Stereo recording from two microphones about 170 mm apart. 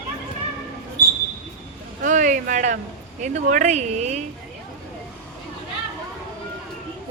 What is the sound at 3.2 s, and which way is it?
Speech, 45° right (ahead or behind).